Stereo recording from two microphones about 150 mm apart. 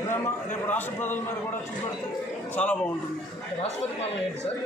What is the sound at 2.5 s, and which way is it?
Speech, 10° left (ahead or behind).